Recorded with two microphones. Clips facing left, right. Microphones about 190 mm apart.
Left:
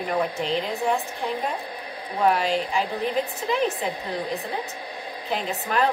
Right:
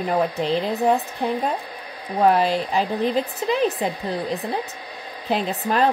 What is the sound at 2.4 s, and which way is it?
Speech, 40° right (ahead or behind).